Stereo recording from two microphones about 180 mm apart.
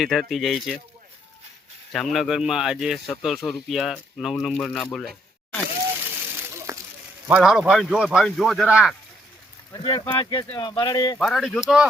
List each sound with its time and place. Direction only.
0.0 s speech: centre (ahead or behind)
1.9 s speech: centre (ahead or behind)
6.7 s sizzle: 15° right (ahead or behind)
7.3 s speech: 5° right (ahead or behind)
9.7 s speech: 25° left (ahead or behind)
11.2 s speech: centre (ahead or behind)